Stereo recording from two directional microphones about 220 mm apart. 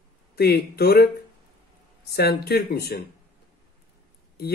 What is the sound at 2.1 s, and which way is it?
Speech, 45° left (ahead or behind).